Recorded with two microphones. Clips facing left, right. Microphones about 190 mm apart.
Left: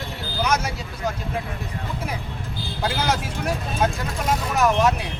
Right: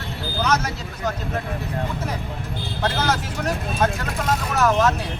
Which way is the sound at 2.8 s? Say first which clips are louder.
Right 1 dB; 10° left (ahead or behind).